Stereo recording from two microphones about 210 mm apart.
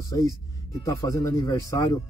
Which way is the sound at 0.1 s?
15° left (ahead or behind).